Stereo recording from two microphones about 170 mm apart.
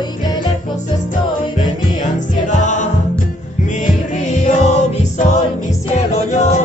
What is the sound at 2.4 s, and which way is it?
Music, 45° left (ahead or behind).